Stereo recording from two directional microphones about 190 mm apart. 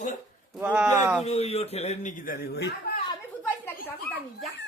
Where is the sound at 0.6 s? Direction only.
5° right (ahead or behind).